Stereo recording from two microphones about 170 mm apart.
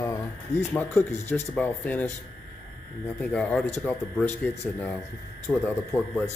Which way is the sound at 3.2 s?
10° left (ahead or behind).